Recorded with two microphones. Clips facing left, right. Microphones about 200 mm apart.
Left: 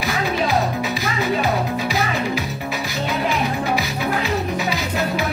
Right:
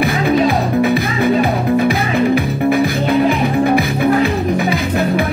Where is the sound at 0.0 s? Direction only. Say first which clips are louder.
Right 8 dB; 55° right (ahead or behind).